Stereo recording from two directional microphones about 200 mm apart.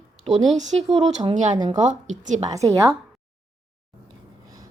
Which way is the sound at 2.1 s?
35° right (ahead or behind).